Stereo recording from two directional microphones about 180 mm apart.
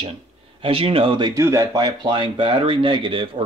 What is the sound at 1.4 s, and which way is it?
Speech, 15° right (ahead or behind).